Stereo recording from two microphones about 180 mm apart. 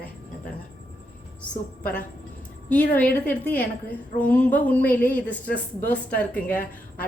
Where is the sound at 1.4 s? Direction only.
10° left (ahead or behind).